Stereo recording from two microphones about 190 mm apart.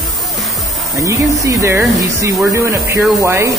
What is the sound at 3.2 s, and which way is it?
Speech, 15° right (ahead or behind).